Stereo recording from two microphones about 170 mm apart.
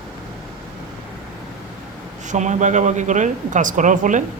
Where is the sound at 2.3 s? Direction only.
45° right (ahead or behind).